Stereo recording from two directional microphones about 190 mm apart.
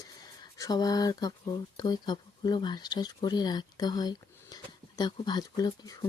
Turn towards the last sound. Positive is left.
turn(degrees=20)  # may be behind; listen again after turning